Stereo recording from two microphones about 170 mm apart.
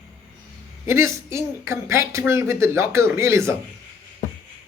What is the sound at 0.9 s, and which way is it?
Speech, 15° right (ahead or behind).